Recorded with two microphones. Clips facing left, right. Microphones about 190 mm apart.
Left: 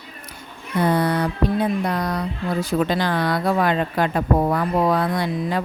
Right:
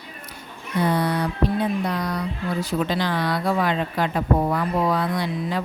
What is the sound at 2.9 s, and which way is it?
Speech, 50° left (ahead or behind).